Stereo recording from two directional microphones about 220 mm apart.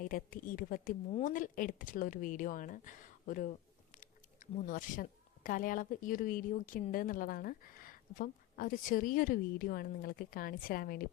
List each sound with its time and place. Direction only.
0.0 s speech: 40° left (ahead or behind)
4.6 s speech: 40° left (ahead or behind)